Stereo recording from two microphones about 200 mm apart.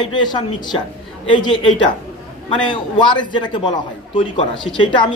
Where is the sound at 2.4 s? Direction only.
25° left (ahead or behind).